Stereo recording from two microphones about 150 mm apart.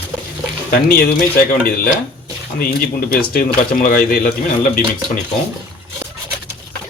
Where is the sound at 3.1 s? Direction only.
75° left (ahead or behind).